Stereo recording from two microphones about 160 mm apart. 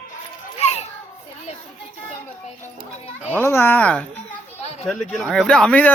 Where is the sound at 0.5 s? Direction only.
40° left (ahead or behind).